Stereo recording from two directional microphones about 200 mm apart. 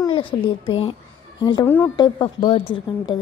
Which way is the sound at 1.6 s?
10° left (ahead or behind).